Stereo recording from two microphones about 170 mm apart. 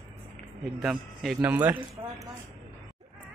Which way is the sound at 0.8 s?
Centre (ahead or behind).